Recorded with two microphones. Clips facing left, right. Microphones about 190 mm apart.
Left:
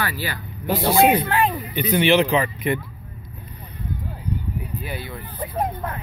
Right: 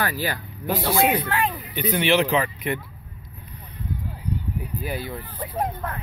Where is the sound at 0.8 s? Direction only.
30° left (ahead or behind).